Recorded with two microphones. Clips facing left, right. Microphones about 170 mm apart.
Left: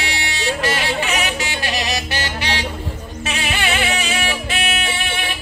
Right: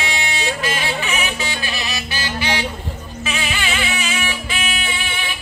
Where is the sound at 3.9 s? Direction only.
40° left (ahead or behind).